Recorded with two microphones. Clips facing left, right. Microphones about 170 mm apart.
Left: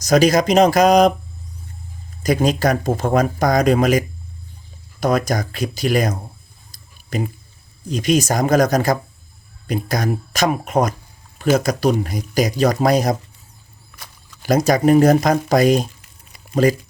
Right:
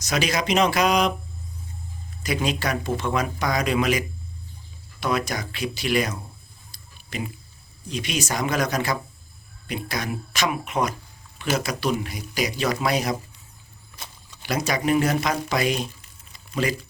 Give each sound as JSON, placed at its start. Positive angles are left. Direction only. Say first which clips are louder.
{"t": 0.0, "sound": "speech", "louder": "left 11 dB", "side_deg": 40}
{"t": 2.2, "sound": "speech", "louder": "left 8 dB", "side_deg": 45}
{"t": 6.7, "sound": "a sound", "louder": "left 9 dB", "side_deg": 45}
{"t": 7.9, "sound": "speech", "louder": "left 10 dB", "side_deg": 45}
{"t": 14.4, "sound": "speech", "louder": "left 9 dB", "side_deg": 45}